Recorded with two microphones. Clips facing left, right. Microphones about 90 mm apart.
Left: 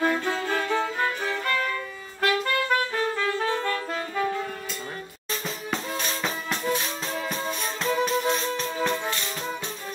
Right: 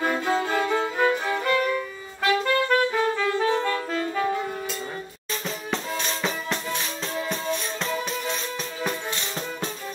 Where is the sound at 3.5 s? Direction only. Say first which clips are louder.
Right 3 dB; 15° right (ahead or behind).